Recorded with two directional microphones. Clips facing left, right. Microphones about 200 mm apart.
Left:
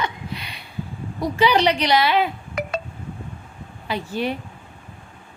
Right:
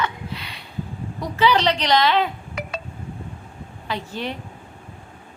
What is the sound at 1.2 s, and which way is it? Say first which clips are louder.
A woman's voice: left 1 dB; 15° left (ahead or behind).